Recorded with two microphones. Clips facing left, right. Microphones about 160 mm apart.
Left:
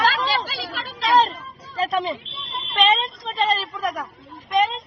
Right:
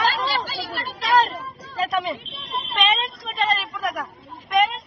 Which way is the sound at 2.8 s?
Centre (ahead or behind).